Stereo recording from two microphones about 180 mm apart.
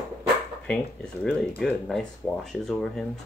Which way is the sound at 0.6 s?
5° left (ahead or behind).